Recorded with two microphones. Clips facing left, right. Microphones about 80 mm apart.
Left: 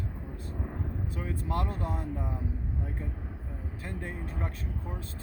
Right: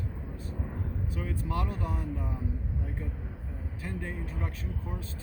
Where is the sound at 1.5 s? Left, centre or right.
Left.